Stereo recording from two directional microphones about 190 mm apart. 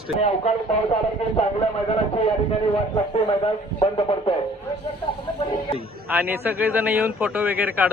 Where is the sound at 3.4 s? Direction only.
25° left (ahead or behind).